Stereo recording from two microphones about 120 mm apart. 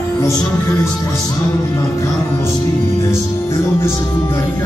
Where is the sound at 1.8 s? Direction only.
20° left (ahead or behind).